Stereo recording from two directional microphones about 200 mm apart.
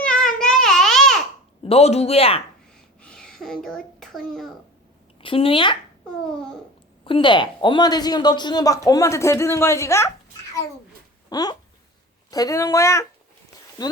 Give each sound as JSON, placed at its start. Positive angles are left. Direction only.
{"t": 0.0, "sound": "babbling", "side_deg": 5}
{"t": 1.6, "sound": "speech", "side_deg": 30}
{"t": 3.0, "sound": "a sound", "side_deg": 5}
{"t": 5.2, "sound": "a woman's voice", "side_deg": 25}
{"t": 7.0, "sound": "a woman's voice", "side_deg": 25}
{"t": 11.3, "sound": "speech", "side_deg": 20}